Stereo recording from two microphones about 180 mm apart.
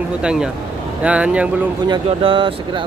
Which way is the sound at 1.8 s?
30° right (ahead or behind).